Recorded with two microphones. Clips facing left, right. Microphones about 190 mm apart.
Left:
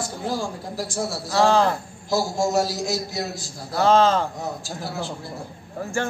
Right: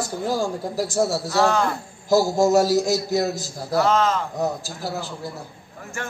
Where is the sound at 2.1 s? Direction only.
40° right (ahead or behind).